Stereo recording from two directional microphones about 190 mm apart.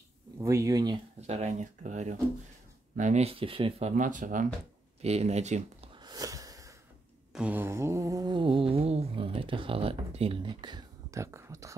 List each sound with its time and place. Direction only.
0.4 s mantra: 15° right (ahead or behind)
1.2 s speech: 35° right (ahead or behind)
3.9 s speech: 45° right (ahead or behind)
5.9 s a sound: 20° right (ahead or behind)
7.3 s mantra: 10° right (ahead or behind)